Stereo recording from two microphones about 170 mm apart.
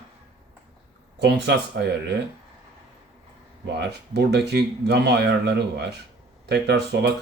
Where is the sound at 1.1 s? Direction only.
80° right.